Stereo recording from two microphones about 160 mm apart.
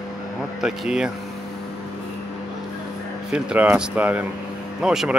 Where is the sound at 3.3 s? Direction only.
5° right (ahead or behind).